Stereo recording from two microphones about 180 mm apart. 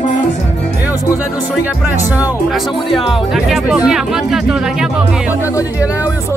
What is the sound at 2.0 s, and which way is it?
Speech, 10° right (ahead or behind).